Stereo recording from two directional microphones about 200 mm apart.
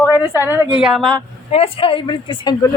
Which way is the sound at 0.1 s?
15° left (ahead or behind).